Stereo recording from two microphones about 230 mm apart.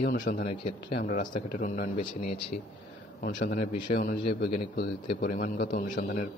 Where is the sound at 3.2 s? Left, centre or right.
Left.